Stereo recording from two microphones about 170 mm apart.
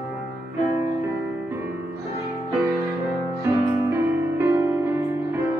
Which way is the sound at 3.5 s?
15° right (ahead or behind).